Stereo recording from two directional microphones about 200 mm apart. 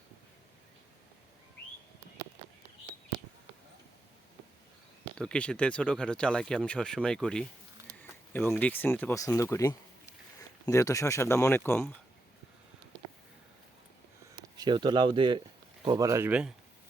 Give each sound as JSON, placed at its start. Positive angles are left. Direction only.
{"t": 5.1, "sound": "speech", "side_deg": 5}
{"t": 14.5, "sound": "speech", "side_deg": -20}